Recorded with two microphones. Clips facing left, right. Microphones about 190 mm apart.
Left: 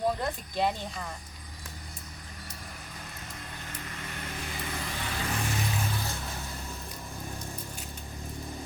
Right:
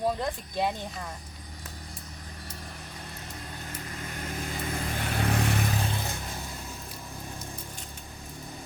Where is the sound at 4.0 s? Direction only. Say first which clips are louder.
Right 4 dB; 40° right (ahead or behind).